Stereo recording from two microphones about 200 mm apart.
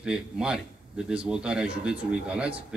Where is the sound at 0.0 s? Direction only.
5° right (ahead or behind).